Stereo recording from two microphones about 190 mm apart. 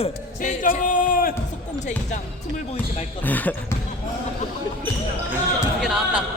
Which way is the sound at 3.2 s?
10° left (ahead or behind).